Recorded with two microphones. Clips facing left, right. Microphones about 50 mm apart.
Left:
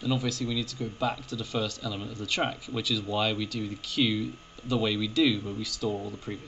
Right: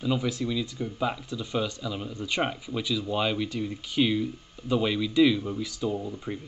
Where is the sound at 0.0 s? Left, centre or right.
Centre.